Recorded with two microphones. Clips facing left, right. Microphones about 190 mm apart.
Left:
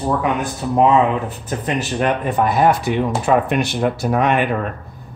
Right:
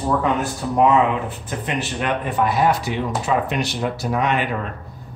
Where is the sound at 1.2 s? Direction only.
40° left (ahead or behind).